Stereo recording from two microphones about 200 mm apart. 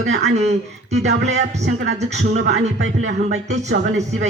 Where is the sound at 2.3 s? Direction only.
60° right (ahead or behind).